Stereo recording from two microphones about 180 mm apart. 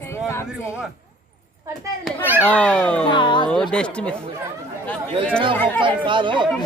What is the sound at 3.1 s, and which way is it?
Speech, 25° left (ahead or behind).